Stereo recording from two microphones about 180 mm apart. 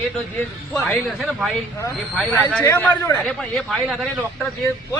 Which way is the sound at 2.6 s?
10° left (ahead or behind).